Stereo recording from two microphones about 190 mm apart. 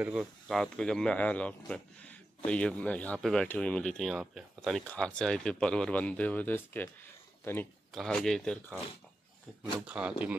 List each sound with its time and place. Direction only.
0.0 s speech: 5° right (ahead or behind)
7.9 s speech: centre (ahead or behind)
9.8 s speech: 5° right (ahead or behind)